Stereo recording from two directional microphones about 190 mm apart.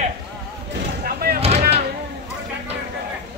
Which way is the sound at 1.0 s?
50° right (ahead or behind).